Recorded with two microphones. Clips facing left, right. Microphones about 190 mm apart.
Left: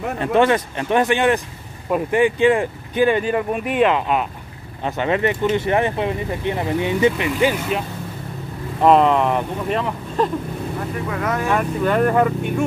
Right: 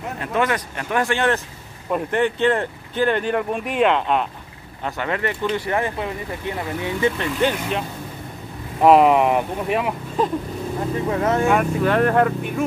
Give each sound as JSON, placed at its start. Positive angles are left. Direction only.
{"t": 0.2, "sound": "speech", "side_deg": 30}
{"t": 1.9, "sound": "speech", "side_deg": 5}
{"t": 4.8, "sound": "speech", "side_deg": 20}
{"t": 7.3, "sound": "speech", "side_deg": 5}
{"t": 8.8, "sound": "speech", "side_deg": -10}
{"t": 11.1, "sound": "speech", "side_deg": -25}
{"t": 11.4, "sound": "speech", "side_deg": -5}